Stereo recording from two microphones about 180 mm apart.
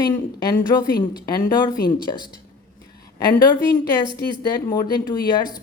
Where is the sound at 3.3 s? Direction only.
20° left (ahead or behind).